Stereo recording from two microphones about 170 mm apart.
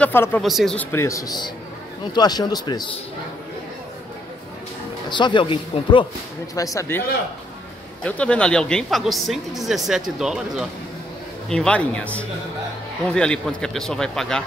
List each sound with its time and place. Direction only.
0.0 s speech: 10° left (ahead or behind)
0.4 s speech: centre (ahead or behind)
0.7 s speech: 15° left (ahead or behind)
5.1 s speech: 25° left (ahead or behind)
6.5 s speech: 20° left (ahead or behind); by 14.4 s 5° left (ahead or behind)